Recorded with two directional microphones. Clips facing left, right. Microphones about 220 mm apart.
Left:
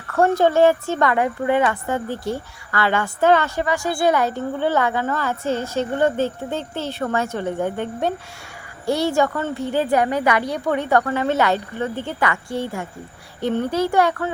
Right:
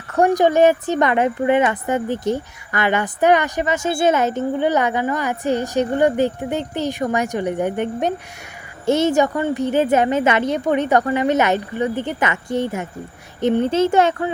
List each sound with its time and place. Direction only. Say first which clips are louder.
0.1 s a woman's voice: right 2 dB; 15° right (ahead or behind)